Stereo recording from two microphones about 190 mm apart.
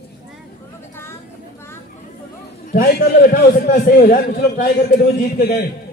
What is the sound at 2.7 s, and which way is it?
A man's voice, 50° left (ahead or behind).